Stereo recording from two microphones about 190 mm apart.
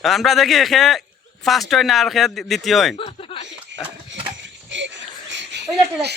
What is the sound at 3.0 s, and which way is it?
Speech, 30° left (ahead or behind).